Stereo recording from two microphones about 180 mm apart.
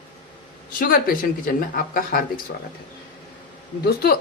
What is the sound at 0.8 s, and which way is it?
Speech, 50° left (ahead or behind).